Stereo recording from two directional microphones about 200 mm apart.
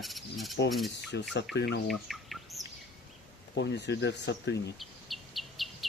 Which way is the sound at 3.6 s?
60° left (ahead or behind).